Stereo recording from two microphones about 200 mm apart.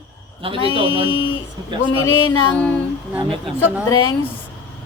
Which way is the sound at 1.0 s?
90° left.